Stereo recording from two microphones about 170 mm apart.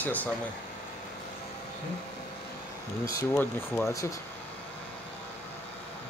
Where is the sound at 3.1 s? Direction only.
20° left (ahead or behind).